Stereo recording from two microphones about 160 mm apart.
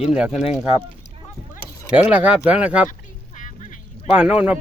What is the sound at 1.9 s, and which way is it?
Speech, 5° right (ahead or behind).